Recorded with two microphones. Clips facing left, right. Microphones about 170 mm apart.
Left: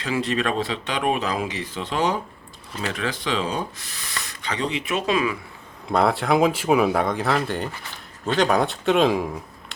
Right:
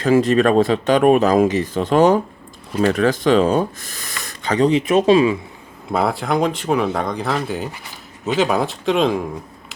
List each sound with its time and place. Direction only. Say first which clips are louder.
0.0 s speech: right 10 dB; 45° right (ahead or behind); by 5.4 s 30° right (ahead or behind)
5.9 s speech: even; centre (ahead or behind)